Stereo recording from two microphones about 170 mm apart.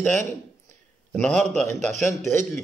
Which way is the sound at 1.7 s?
45° right (ahead or behind).